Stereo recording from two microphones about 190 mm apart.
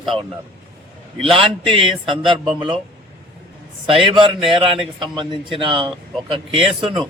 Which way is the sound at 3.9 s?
25° right (ahead or behind).